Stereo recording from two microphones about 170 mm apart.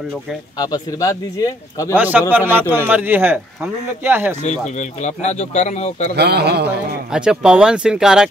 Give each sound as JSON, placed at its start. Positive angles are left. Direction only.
{"t": 0.6, "sound": "speech", "side_deg": 25}
{"t": 2.0, "sound": "speech", "side_deg": -10}
{"t": 4.4, "sound": "speech", "side_deg": 45}
{"t": 6.1, "sound": "a man's voice", "side_deg": -75}
{"t": 7.1, "sound": "speech", "side_deg": -5}